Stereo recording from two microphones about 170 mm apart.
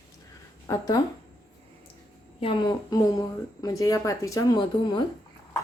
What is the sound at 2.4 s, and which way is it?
A woman's voice, 30° left (ahead or behind).